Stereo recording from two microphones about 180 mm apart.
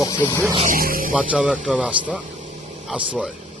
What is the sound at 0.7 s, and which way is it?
Speech, 50° right (ahead or behind).